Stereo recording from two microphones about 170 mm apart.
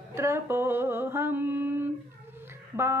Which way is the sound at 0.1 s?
15° right (ahead or behind).